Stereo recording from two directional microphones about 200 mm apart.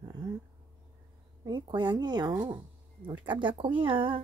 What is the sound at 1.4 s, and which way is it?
Speech, 20° right (ahead or behind).